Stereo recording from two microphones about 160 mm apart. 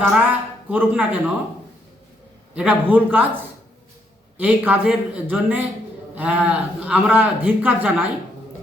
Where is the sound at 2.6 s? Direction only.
10° right (ahead or behind).